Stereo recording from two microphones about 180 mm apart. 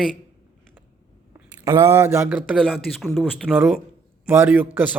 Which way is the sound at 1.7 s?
15° right (ahead or behind).